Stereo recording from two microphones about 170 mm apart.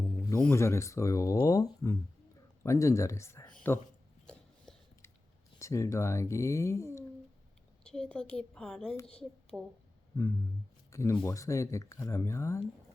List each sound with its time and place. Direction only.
0.0 s speech: 10° left (ahead or behind)
4.7 s a sound: 5° left (ahead or behind)
5.5 s speech: 15° left (ahead or behind)
7.9 s a woman's voice: 5° left (ahead or behind)
10.9 s speech: 15° left (ahead or behind)